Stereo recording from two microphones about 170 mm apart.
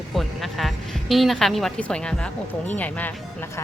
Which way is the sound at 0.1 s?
Centre (ahead or behind).